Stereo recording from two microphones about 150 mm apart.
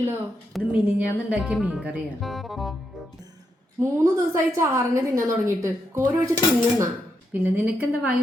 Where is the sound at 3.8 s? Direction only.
20° right (ahead or behind).